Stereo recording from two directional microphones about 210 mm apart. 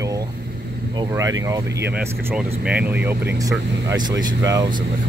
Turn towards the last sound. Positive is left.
turn(degrees=-15)  # may be behind; listen again after turning